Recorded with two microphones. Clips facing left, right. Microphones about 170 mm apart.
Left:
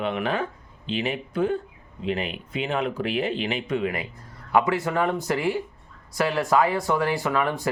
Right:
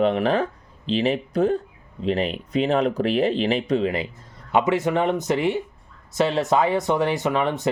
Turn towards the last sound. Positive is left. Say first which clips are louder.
# right 2 dB
turn(degrees=-20)  # may be behind; listen again after turning